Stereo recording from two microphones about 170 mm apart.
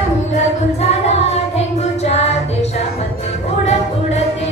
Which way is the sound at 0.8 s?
40° left (ahead or behind).